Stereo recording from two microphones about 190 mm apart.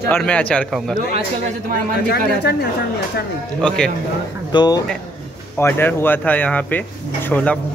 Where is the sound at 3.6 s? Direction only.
5° left (ahead or behind).